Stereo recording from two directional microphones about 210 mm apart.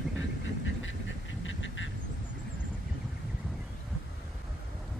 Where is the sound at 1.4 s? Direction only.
65° left (ahead or behind).